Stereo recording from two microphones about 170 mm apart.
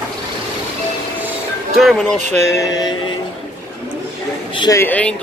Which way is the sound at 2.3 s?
15° left (ahead or behind).